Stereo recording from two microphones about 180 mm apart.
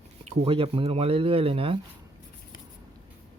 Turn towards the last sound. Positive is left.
turn(degrees=-30)  # may be behind; listen again after turning